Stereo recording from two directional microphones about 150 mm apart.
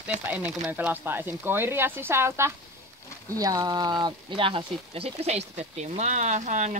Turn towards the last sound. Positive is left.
turn(degrees=-50)  # may be behind; listen again after turning